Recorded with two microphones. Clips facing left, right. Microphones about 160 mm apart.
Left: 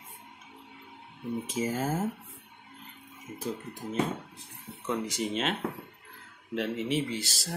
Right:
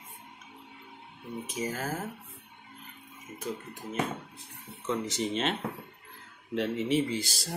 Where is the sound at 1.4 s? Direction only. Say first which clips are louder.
Left 3 dB; 25° left (ahead or behind).